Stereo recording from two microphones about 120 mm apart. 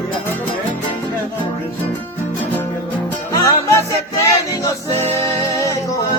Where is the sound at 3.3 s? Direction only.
30° left (ahead or behind).